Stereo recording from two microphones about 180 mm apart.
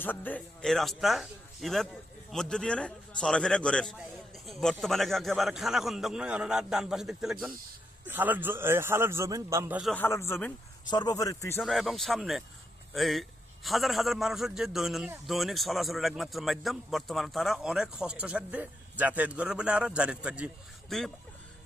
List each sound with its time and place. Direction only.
0.0 s a man's voice: 10° left (ahead or behind); by 9.9 s 10° right (ahead or behind)
9.9 s speech: 15° left (ahead or behind)
11.6 s a man's voice: centre (ahead or behind)